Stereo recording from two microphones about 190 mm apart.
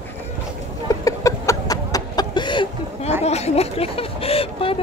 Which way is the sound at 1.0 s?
15° left (ahead or behind).